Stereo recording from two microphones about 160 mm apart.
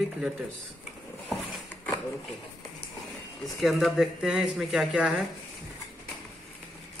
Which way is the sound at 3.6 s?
Centre (ahead or behind).